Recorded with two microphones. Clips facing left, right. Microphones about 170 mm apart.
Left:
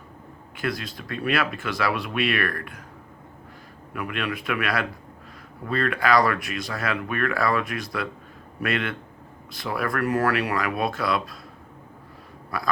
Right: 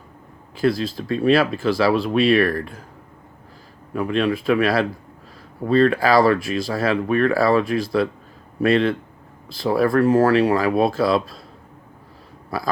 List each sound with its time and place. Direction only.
0.5 s speech: 30° right (ahead or behind)
3.9 s speech: 30° right (ahead or behind)
12.5 s speech: 30° right (ahead or behind)